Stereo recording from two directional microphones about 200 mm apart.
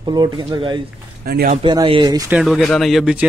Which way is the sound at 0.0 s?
20° right (ahead or behind).